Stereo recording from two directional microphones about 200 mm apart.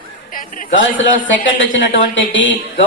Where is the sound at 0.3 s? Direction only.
40° left (ahead or behind).